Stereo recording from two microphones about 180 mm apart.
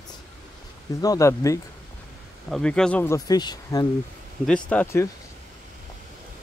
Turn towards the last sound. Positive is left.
turn(degrees=10)  # may be behind; listen again after turning